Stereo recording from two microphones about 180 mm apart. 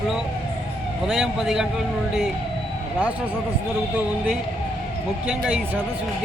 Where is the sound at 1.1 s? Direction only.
Centre (ahead or behind).